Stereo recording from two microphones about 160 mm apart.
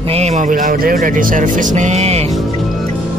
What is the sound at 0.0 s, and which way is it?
Speech, 40° right (ahead or behind).